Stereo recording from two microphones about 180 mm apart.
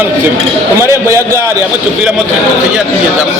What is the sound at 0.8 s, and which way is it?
Speech, 15° right (ahead or behind).